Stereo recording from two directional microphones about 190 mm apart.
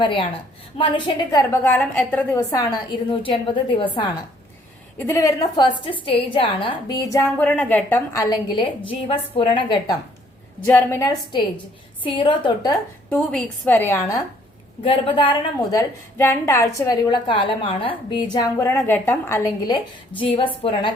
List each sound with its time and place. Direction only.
0.0 s a woman's voice: 25° left (ahead or behind)
1.6 s a woman's voice: 5° left (ahead or behind); by 4.1 s 25° left (ahead or behind)
4.9 s a woman's voice: 15° left (ahead or behind)
10.7 s a woman's voice: 10° left (ahead or behind)
13.1 s a woman's voice: 10° left (ahead or behind)
14.8 s a woman's voice: 25° left (ahead or behind)
16.1 s a woman's voice: 10° left (ahead or behind); by 20.9 s 25° left (ahead or behind)